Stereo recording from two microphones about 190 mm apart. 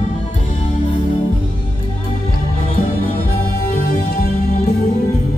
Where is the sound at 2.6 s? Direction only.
45° left (ahead or behind).